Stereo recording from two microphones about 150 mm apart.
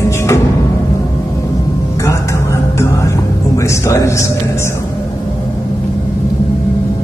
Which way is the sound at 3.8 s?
20° left (ahead or behind).